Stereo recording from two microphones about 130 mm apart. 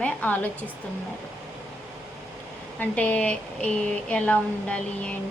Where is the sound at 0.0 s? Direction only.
10° left (ahead or behind).